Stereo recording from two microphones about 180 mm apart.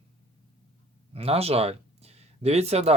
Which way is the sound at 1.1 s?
35° right (ahead or behind).